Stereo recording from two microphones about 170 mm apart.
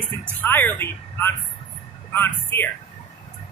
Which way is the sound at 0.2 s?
10° left (ahead or behind).